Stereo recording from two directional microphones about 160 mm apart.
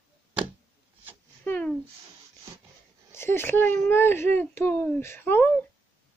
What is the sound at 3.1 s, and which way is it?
A woman's voice, 15° left (ahead or behind).